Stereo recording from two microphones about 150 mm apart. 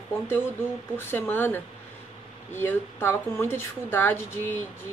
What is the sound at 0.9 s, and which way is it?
Speech, 15° left (ahead or behind).